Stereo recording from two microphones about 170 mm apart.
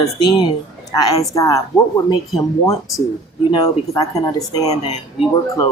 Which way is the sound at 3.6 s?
20° left (ahead or behind).